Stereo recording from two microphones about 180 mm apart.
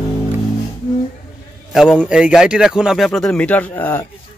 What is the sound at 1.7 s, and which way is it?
A man's voice, centre (ahead or behind).